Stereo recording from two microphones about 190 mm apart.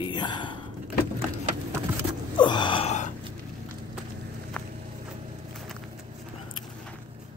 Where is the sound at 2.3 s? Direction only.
25° left (ahead or behind).